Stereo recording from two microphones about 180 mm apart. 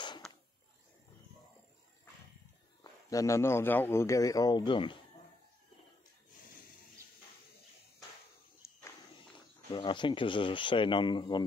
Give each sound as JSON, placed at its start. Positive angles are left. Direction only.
{"t": 2.8, "sound": "speech", "side_deg": 20}
{"t": 8.6, "sound": "walk", "side_deg": 15}
{"t": 9.7, "sound": "speech", "side_deg": 25}